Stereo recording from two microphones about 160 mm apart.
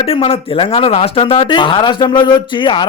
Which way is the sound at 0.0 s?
35° left (ahead or behind).